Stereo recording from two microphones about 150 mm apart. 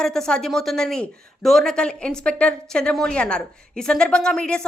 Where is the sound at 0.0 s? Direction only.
5° left (ahead or behind).